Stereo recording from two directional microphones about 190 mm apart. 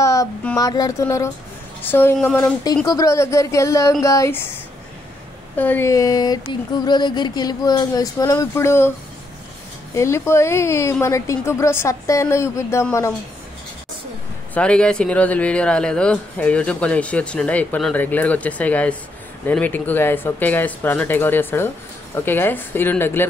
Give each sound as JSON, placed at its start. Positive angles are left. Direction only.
{"t": 0.0, "sound": "child singing", "side_deg": 15}
{"t": 0.6, "sound": "speech", "side_deg": 20}
{"t": 5.6, "sound": "a sound", "side_deg": 10}
{"t": 9.9, "sound": "speech", "side_deg": 15}
{"t": 14.5, "sound": "speech", "side_deg": 5}